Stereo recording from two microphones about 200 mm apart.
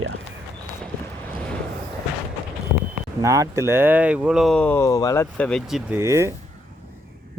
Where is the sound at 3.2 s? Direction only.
15° right (ahead or behind); by 5.5 s 15° left (ahead or behind).